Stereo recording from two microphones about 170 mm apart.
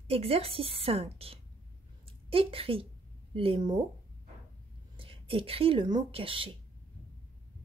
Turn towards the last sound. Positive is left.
turn(degrees=-30)  # may be behind; listen again after turning